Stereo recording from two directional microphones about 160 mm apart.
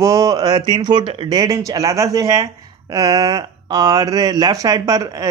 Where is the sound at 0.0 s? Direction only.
20° right (ahead or behind).